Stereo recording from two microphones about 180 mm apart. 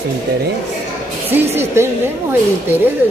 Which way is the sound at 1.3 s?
10° right (ahead or behind).